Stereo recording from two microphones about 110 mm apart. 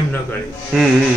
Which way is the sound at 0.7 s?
5° right (ahead or behind).